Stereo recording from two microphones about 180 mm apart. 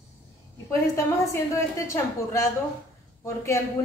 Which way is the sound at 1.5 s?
15° left (ahead or behind).